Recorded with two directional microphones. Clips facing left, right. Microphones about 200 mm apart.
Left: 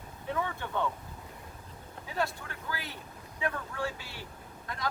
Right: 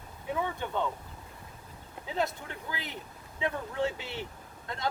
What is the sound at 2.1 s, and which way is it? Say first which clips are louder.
Speech: right 1 dB; 20° right (ahead or behind).